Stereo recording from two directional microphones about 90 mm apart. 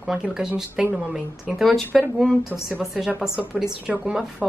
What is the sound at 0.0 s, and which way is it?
A woman's voice, 5° right (ahead or behind).